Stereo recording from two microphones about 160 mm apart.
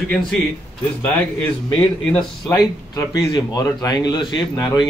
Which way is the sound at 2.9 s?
25° left (ahead or behind).